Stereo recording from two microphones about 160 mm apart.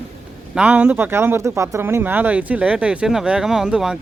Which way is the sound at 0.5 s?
10° right (ahead or behind).